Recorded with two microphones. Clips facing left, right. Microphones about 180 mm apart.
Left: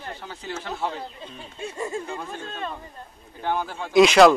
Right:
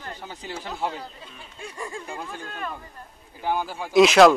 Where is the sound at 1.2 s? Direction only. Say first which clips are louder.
Left 5 dB; 30° left (ahead or behind).